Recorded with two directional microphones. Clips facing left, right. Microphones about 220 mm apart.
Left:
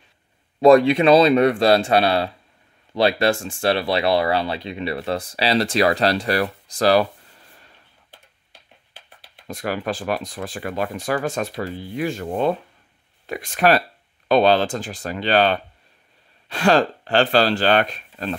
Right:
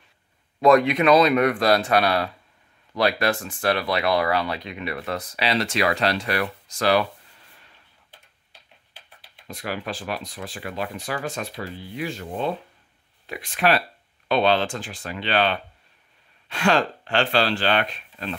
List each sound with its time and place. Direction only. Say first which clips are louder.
0.6 s speech: left 4 dB; 30° left (ahead or behind)
9.5 s speech: left 5 dB; 45° left (ahead or behind)